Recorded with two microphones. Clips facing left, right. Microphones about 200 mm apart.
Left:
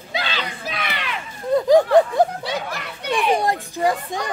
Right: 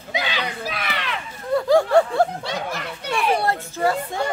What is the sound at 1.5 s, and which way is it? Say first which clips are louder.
Snicker: left 2 dB; 20° left (ahead or behind).